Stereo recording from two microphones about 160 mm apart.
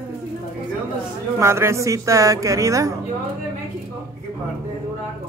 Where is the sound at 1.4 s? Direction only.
15° right (ahead or behind).